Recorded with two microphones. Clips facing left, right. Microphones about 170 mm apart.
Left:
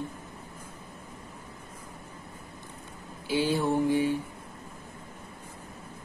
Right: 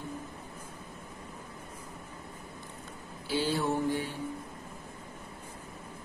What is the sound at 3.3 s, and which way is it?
Speech, 15° left (ahead or behind).